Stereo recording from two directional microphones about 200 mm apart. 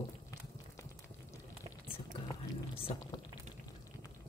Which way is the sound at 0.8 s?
15° left (ahead or behind).